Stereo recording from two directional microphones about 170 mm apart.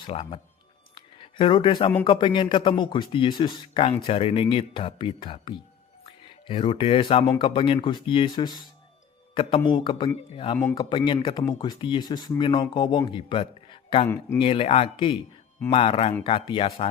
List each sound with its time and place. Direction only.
0.0 s speech: 35° left (ahead or behind)
0.9 s a sound: 30° left (ahead or behind)
2.0 s a man's voice: 30° left (ahead or behind)
10.6 s speech: 15° left (ahead or behind)
10.8 s a man's voice: 30° left (ahead or behind)